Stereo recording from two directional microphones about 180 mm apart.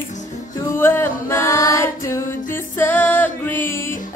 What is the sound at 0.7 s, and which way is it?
Music, 10° left (ahead or behind).